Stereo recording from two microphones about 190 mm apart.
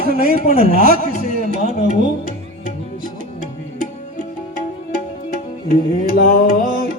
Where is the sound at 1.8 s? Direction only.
45° right (ahead or behind).